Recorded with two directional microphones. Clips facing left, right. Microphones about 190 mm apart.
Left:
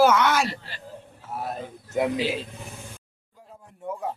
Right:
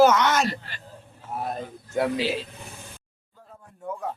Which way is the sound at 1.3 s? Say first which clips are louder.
Right 1 dB; 5° left (ahead or behind).